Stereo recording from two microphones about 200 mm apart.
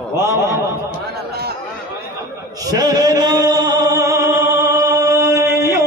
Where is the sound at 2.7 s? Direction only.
20° right (ahead or behind).